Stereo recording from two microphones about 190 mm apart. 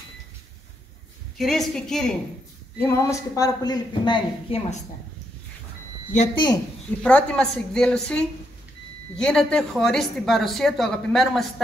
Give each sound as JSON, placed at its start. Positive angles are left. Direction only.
{"t": 1.4, "sound": "a woman's voice", "side_deg": 0}
{"t": 2.9, "sound": "speech", "side_deg": 15}
{"t": 6.3, "sound": "speech", "side_deg": 20}
{"t": 7.0, "sound": "a woman's voice", "side_deg": 5}